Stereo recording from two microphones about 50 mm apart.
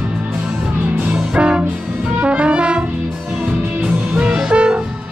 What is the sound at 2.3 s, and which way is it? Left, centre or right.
Brass instrument, right.